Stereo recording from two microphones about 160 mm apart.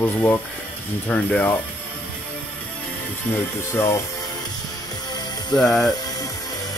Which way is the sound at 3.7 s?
15° left (ahead or behind).